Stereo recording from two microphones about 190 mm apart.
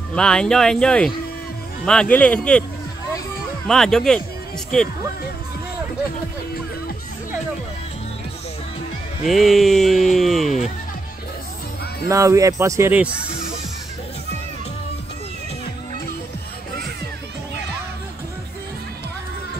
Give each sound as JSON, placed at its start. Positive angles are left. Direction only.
{"t": 0.1, "sound": "speech", "side_deg": 5}
{"t": 3.6, "sound": "speech", "side_deg": 0}
{"t": 9.2, "sound": "speech", "side_deg": 0}
{"t": 12.1, "sound": "speech", "side_deg": -15}